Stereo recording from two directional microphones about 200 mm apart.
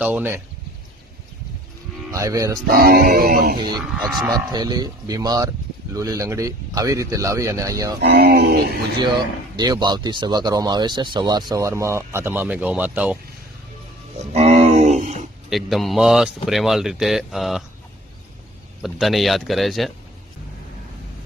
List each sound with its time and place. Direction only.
0.0 s speech: 10° right (ahead or behind)
2.1 s speech: 15° right (ahead or behind)
2.6 s music: 50° right (ahead or behind)
3.6 s speech: 20° right (ahead or behind)
8.0 s music: 55° right (ahead or behind)
9.6 s speech: 20° right (ahead or behind)
14.3 s a sound: 30° right (ahead or behind)
15.4 s speech: centre (ahead or behind)
18.8 s speech: centre (ahead or behind)